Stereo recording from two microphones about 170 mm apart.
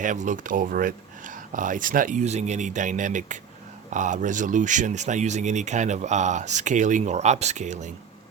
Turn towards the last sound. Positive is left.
turn(degrees=-45)  # may be behind; listen again after turning